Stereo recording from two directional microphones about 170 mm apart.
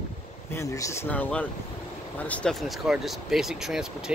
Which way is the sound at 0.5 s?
20° left (ahead or behind).